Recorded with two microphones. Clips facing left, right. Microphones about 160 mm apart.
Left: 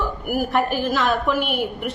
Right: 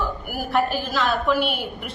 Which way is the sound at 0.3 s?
50° left (ahead or behind).